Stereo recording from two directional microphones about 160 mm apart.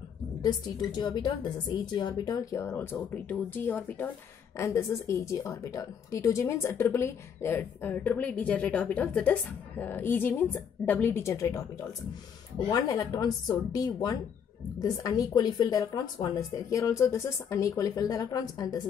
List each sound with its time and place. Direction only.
0.4 s a woman's voice: 25° left (ahead or behind)
12.6 s speech: 25° left (ahead or behind)